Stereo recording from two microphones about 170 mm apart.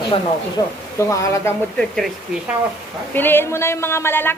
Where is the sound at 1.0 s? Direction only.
15° left (ahead or behind).